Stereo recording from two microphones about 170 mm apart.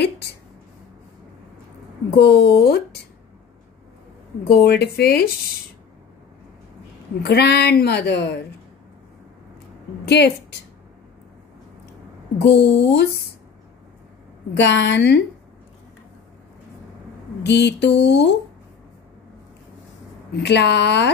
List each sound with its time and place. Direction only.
2.1 s a woman's voice: 75° left (ahead or behind)
4.5 s a woman's voice: 70° left (ahead or behind)
7.2 s a woman's voice: 75° left (ahead or behind)
10.0 s a woman's voice: 85° left
12.4 s a woman's voice: 90° left
14.6 s a woman's voice: 90° left
17.4 s a sound: 85° left
20.3 s a sound: 85° left